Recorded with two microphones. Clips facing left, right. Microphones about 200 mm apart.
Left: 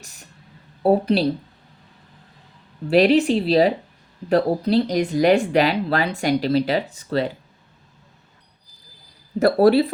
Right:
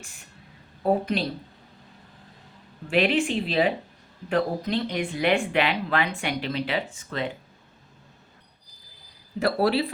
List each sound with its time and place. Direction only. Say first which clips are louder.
0.0 s speech: left 1 dB; 40° left (ahead or behind)
2.8 s speech: left 7 dB; 40° left (ahead or behind)
9.4 s speech: left 8 dB; 45° left (ahead or behind)